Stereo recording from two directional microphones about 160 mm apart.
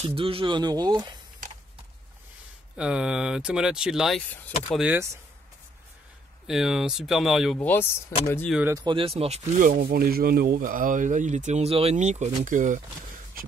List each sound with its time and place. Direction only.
0.0 s speech: 35° right (ahead or behind)
2.8 s speech: 5° right (ahead or behind)
4.3 s speech: 10° left (ahead or behind)
4.7 s speech: 10° right (ahead or behind)
6.4 s speech: centre (ahead or behind)
7.5 s speech: 15° left (ahead or behind)
8.6 s speech: 25° right (ahead or behind); by 9.7 s 45° right (ahead or behind)
9.7 s speech: 70° right (ahead or behind); by 12.8 s 55° right (ahead or behind)